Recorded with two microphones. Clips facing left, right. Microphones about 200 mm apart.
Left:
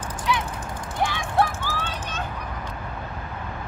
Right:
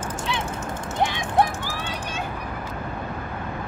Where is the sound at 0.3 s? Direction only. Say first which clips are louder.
Left 5 dB; 25° right (ahead or behind).